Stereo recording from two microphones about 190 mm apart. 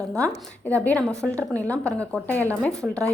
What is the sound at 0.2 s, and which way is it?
A woman's voice, 5° left (ahead or behind).